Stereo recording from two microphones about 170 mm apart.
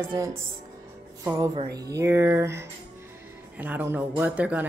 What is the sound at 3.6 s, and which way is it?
Music, 10° right (ahead or behind).